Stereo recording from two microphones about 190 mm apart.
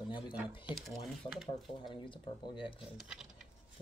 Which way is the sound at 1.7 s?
25° left (ahead or behind).